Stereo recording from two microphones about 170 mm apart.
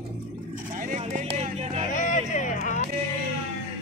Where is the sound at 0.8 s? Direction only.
50° right (ahead or behind).